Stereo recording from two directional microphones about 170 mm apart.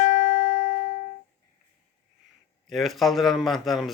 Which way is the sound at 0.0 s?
50° left (ahead or behind).